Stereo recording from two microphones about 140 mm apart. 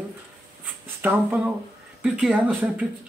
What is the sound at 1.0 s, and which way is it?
Speech, 15° right (ahead or behind).